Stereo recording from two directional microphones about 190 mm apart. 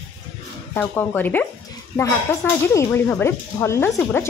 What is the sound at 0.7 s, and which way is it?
Speech, 10° left (ahead or behind).